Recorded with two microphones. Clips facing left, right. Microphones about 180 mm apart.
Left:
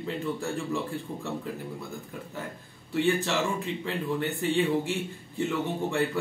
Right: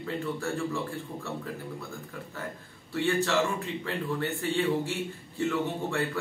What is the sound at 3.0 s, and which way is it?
Speech, 15° left (ahead or behind).